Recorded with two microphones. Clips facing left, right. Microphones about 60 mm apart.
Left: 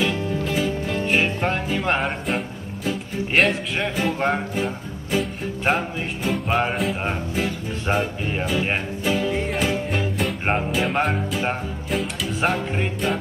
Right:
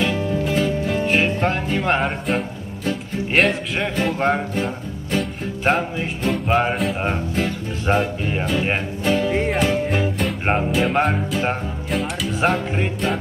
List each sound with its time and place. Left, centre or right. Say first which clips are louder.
0.0 s music: right 2 dB; centre